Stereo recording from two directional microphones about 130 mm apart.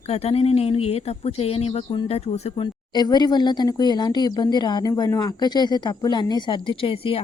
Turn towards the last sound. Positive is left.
turn(degrees=45)  # may be behind; listen again after turning